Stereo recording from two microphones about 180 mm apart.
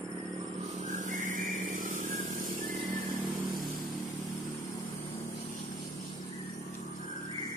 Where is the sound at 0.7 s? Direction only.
45° right (ahead or behind).